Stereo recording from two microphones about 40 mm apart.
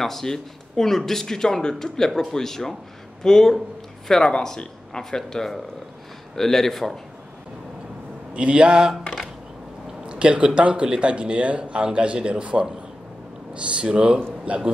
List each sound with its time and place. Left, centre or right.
0.0 s speech: centre
8.3 s speech: right
10.0 s a man's voice: right